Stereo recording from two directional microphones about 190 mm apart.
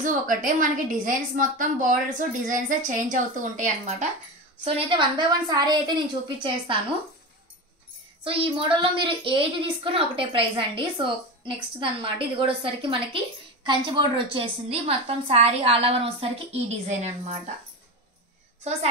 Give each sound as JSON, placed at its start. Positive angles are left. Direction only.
{"t": 0.0, "sound": "a woman's voice", "side_deg": -45}
{"t": 4.6, "sound": "a woman's voice", "side_deg": -30}
{"t": 8.2, "sound": "a woman's voice", "side_deg": -30}